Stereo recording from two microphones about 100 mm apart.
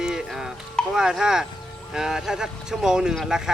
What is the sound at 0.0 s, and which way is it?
Music, 5° right (ahead or behind).